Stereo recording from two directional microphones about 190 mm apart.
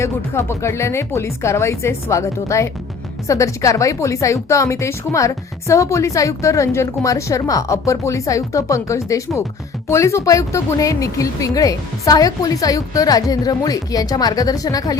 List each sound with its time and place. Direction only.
0.0 s speech: 15° left (ahead or behind)